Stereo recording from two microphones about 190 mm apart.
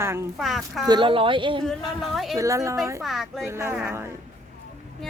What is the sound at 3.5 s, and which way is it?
Speech, 15° right (ahead or behind).